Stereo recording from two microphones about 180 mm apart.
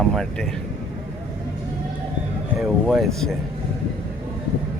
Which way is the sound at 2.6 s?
Centre (ahead or behind).